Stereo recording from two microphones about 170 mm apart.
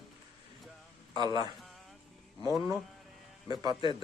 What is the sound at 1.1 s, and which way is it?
Speech, 25° right (ahead or behind).